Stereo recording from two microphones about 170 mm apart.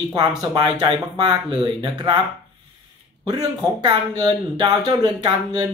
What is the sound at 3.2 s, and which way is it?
Speech, 25° right (ahead or behind).